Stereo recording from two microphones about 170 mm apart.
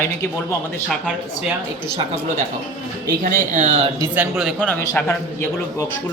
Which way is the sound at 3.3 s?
45° right (ahead or behind).